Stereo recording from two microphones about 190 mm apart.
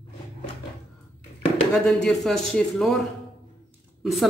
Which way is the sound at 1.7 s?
Centre (ahead or behind).